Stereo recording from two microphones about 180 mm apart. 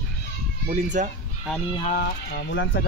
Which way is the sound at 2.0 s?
65° left (ahead or behind).